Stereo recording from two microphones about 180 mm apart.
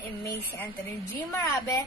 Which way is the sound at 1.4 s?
15° left (ahead or behind).